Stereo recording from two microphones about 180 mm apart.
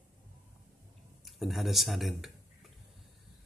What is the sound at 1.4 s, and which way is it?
Speech, centre (ahead or behind).